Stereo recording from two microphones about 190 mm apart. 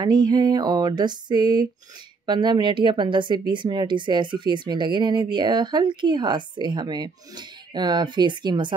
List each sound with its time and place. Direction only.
0.0 s speech: 20° right (ahead or behind)